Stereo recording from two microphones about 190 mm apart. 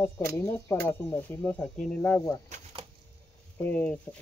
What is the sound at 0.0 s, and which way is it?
Speech, 10° left (ahead or behind).